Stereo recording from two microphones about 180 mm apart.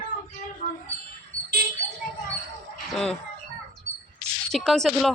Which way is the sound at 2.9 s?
Centre (ahead or behind).